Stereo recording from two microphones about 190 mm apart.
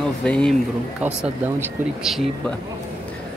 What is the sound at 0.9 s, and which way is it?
Speech, 5° right (ahead or behind).